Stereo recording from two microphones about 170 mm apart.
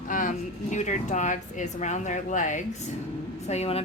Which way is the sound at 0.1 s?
50° left (ahead or behind).